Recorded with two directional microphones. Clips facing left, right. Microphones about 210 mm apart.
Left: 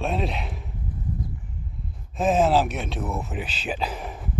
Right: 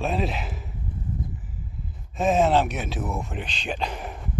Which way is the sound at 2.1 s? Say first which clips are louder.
Even; centre (ahead or behind).